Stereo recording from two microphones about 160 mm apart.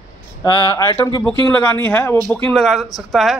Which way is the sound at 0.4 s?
20° left (ahead or behind).